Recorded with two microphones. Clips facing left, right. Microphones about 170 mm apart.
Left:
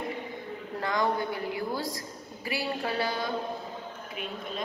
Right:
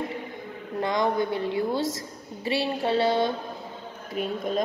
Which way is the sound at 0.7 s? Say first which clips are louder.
Right 4 dB; 20° right (ahead or behind).